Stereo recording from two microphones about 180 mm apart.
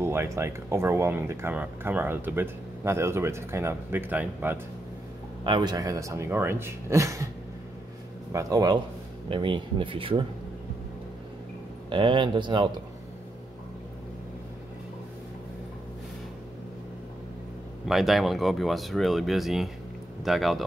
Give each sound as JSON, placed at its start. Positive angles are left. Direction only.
{"t": 0.0, "sound": "speech", "side_deg": -15}
{"t": 5.4, "sound": "speech", "side_deg": -25}
{"t": 8.3, "sound": "speech", "side_deg": -20}
{"t": 11.9, "sound": "speech", "side_deg": -25}
{"t": 17.8, "sound": "speech", "side_deg": 0}